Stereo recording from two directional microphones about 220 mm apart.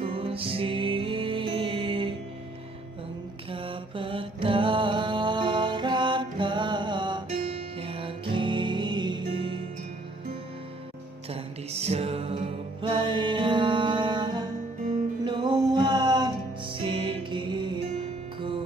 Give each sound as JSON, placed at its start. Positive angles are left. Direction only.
{"t": 0.0, "sound": "music", "side_deg": -25}
{"t": 3.4, "sound": "mantra", "side_deg": -25}
{"t": 11.2, "sound": "music", "side_deg": -25}